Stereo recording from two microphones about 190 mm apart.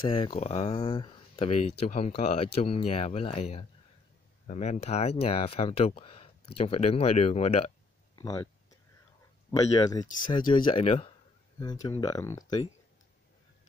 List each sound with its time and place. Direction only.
0.0 s speech: 30° left (ahead or behind)
8.2 s a sound: 20° left (ahead or behind)
9.8 s speech: 20° left (ahead or behind)
11.6 s speech: 20° left (ahead or behind)